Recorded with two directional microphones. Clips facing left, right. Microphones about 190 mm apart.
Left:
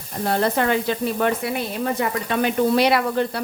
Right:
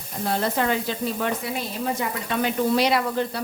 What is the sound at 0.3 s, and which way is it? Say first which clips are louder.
Speech: left 3 dB; 60° left (ahead or behind).